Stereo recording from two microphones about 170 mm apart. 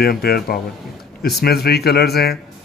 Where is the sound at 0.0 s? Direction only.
65° left (ahead or behind).